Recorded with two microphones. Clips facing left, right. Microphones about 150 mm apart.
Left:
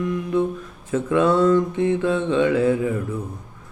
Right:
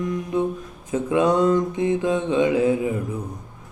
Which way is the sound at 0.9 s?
15° right (ahead or behind).